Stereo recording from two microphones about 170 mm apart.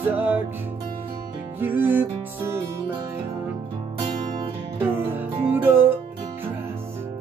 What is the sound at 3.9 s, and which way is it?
Music, 30° right (ahead or behind).